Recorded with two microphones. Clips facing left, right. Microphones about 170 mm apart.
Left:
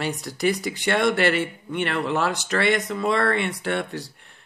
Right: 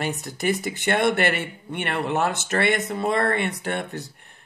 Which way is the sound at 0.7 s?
50° right (ahead or behind).